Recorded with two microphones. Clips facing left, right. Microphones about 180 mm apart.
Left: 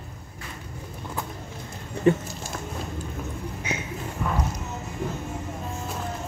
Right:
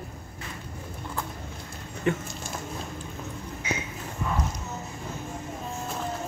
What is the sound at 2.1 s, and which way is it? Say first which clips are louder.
Speech: left 7 dB; 35° left (ahead or behind).